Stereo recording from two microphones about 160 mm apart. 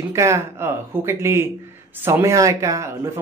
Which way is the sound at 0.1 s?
15° right (ahead or behind).